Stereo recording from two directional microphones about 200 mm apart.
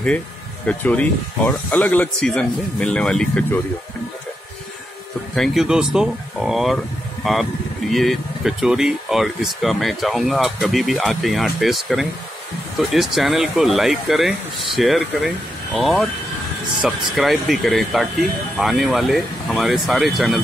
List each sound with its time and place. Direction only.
0.7 s speech: 5° left (ahead or behind)
5.3 s speech: centre (ahead or behind)